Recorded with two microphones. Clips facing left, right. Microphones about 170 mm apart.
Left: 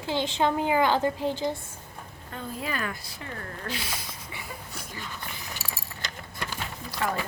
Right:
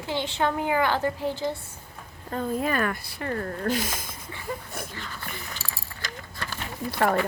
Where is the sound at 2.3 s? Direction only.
45° right (ahead or behind).